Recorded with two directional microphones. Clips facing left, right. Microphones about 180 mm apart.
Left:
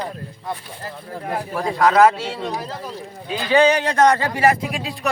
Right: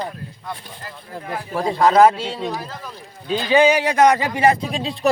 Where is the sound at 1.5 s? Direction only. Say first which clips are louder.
Right 2 dB; 25° right (ahead or behind).